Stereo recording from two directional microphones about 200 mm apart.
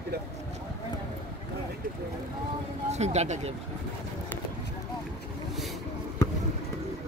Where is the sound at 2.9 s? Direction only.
35° right (ahead or behind).